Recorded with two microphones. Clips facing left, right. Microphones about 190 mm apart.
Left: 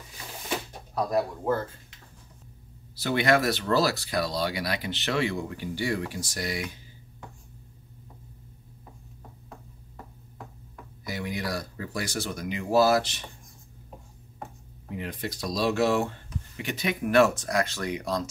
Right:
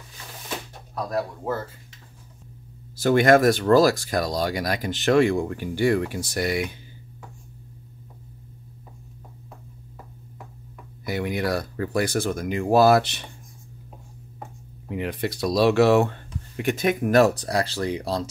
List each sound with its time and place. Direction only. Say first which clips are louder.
3.0 s speech: right 7 dB; 45° right (ahead or behind); by 6.7 s 60° right (ahead or behind)
11.1 s speech: right 7 dB; 60° right (ahead or behind)
15.0 s speech: right 7 dB; 70° right (ahead or behind); by 18.3 s 30° right (ahead or behind)